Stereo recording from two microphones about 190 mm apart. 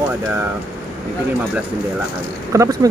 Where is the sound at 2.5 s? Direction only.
15° right (ahead or behind).